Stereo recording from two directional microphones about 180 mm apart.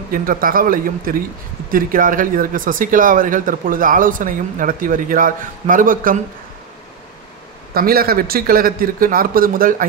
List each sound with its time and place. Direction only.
0.1 s speech: 50° right (ahead or behind)
7.7 s speech: 55° right (ahead or behind)